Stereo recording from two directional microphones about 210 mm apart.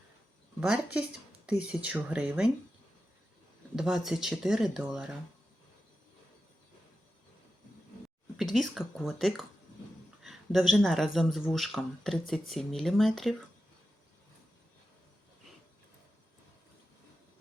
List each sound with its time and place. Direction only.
0.6 s speech: 5° right (ahead or behind)
3.8 s speech: centre (ahead or behind)
8.5 s speech: centre (ahead or behind)